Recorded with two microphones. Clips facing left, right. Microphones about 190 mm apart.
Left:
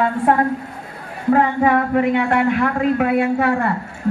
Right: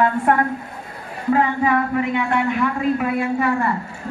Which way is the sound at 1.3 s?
55° left (ahead or behind).